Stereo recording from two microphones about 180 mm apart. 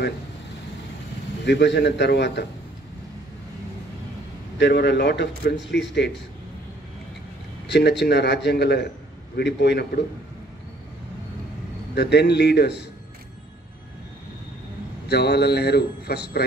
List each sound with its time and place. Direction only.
1.4 s a man's voice: 75° left (ahead or behind)
4.6 s a man's voice: 70° left (ahead or behind)
7.6 s a man's voice: 70° left (ahead or behind)
11.9 s a man's voice: 65° left (ahead or behind)
15.0 s speech: 65° left (ahead or behind)